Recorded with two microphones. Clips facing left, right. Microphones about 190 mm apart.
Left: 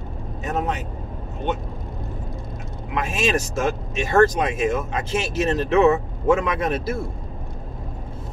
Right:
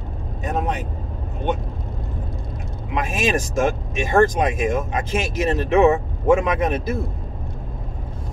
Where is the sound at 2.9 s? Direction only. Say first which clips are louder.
Right 1 dB; 15° right (ahead or behind).